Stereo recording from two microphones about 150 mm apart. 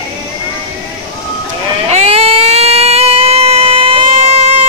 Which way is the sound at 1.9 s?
45° right (ahead or behind).